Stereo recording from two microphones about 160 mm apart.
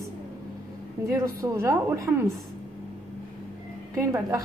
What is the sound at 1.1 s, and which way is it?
A woman's voice, 20° right (ahead or behind).